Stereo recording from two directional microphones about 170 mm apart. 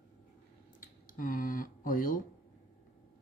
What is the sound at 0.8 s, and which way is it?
Speech, 50° left (ahead or behind).